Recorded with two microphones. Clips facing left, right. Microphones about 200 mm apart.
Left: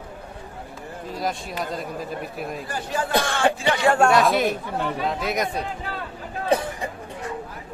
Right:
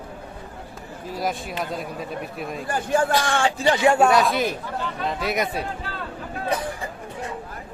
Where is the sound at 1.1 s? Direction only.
Centre (ahead or behind).